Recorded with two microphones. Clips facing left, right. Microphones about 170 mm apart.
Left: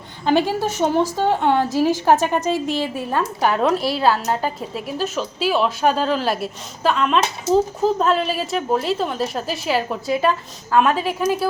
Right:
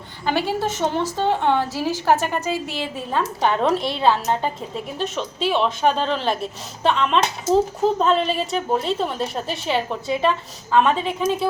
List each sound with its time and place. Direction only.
0.3 s a woman's voice: 15° left (ahead or behind)